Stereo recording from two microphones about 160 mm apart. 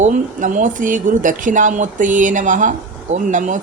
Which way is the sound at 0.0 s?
50° right (ahead or behind).